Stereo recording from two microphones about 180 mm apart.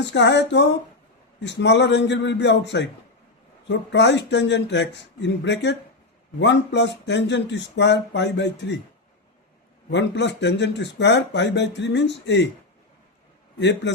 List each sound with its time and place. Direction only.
0.0 s speech: 80° left
9.9 s speech: 75° left (ahead or behind)
13.6 s speech: 75° left (ahead or behind)